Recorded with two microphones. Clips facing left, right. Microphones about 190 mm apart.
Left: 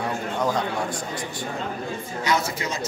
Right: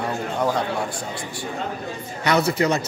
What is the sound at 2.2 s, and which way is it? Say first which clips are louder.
Speech: right 6 dB; 65° right (ahead or behind).